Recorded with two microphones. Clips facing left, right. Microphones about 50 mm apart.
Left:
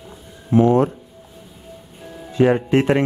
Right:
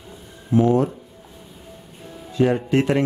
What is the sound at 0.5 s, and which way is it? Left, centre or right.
Speech, left.